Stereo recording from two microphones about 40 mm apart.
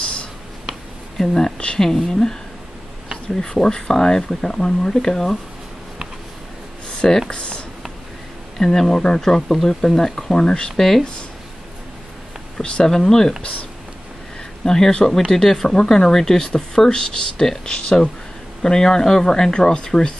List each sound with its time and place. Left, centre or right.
1.1 s speech: centre
7.2 s a sound: left
8.5 s speech: centre
12.5 s speech: left
12.8 s speech: centre
13.4 s speech: left
14.6 s speech: centre